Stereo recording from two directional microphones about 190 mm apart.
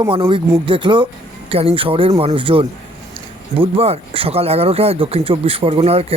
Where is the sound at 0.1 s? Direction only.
30° right (ahead or behind).